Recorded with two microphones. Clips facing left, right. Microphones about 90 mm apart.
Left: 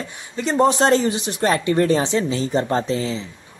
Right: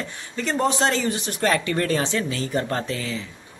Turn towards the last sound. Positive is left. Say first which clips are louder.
# left 6 dB
turn(degrees=25)  # may be behind; listen again after turning